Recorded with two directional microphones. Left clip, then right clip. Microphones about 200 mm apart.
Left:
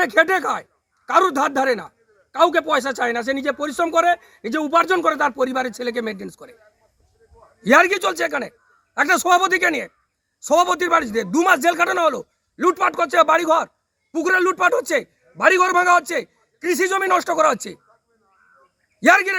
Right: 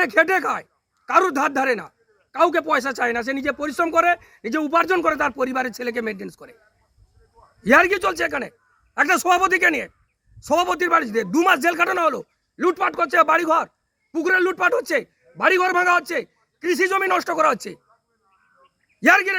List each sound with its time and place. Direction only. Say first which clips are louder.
0.0 s a man's voice: left 1 dB; 10° right (ahead or behind)
7.6 s a man's voice: left 1 dB; 10° right (ahead or behind)
18.9 s a man's voice: left 1 dB; 15° right (ahead or behind)